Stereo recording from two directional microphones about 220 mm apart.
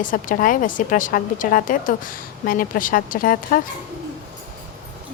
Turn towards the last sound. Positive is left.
turn(degrees=40)  # may be behind; listen again after turning